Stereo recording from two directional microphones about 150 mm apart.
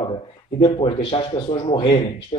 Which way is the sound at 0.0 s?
35° left (ahead or behind).